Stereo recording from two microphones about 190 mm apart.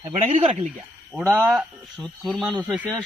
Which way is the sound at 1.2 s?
10° right (ahead or behind).